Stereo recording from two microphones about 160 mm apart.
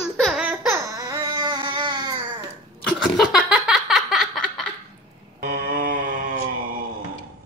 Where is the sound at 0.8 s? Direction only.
25° right (ahead or behind).